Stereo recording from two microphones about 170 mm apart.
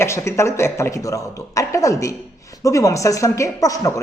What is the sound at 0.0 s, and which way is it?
Speech, 15° left (ahead or behind).